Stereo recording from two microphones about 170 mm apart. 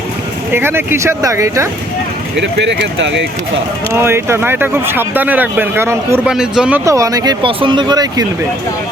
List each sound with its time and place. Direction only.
0.5 s speech: 15° right (ahead or behind)
2.3 s speech: 90° right
3.9 s speech: 15° right (ahead or behind)
6.2 s speech: 5° right (ahead or behind); by 8.3 s 25° right (ahead or behind)